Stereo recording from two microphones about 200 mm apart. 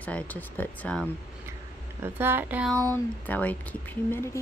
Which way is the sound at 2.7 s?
10° left (ahead or behind).